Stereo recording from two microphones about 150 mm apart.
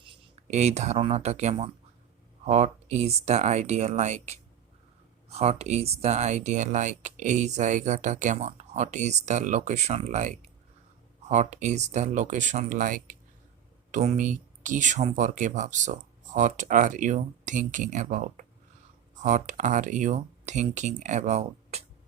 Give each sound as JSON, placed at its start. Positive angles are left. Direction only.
{"t": 0.4, "sound": "speech", "side_deg": -50}